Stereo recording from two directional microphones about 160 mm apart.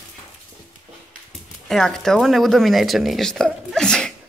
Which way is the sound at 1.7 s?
Centre (ahead or behind).